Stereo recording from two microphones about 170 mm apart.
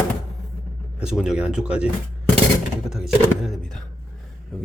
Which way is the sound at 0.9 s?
5° right (ahead or behind).